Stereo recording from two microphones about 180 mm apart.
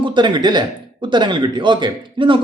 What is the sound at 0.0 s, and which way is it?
A man's voice, 25° right (ahead or behind).